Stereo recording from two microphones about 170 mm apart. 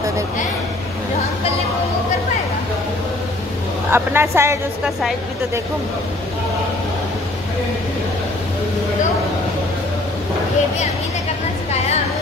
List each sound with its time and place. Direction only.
3.9 s a woman's voice: 15° right (ahead or behind)